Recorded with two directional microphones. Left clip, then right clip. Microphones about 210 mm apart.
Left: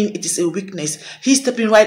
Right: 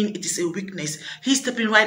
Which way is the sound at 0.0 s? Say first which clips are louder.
Left 6 dB; 5° right (ahead or behind).